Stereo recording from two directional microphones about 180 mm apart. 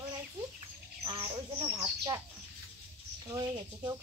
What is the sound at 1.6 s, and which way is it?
Speech, 5° right (ahead or behind).